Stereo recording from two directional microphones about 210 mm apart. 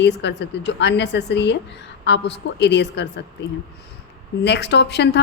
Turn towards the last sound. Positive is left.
turn(degrees=55)  # may be behind; listen again after turning